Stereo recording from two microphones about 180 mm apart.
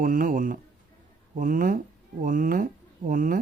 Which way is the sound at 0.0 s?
50° right (ahead or behind).